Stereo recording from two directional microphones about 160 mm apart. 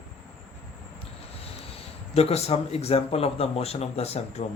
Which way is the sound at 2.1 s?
40° left (ahead or behind).